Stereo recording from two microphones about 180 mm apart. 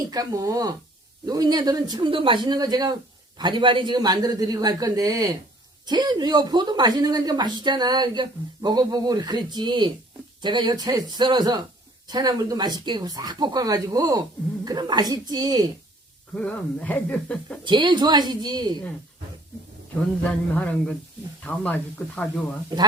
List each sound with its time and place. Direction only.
0.1 s speech: 20° right (ahead or behind)
16.3 s speech: 5° left (ahead or behind)
17.6 s speech: 25° right (ahead or behind)
20.6 s speech: 5° left (ahead or behind)